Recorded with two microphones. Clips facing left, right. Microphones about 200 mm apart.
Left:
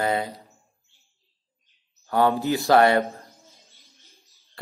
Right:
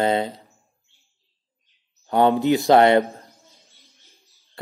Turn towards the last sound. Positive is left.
turn(degrees=0)  # may be behind; listen again after turning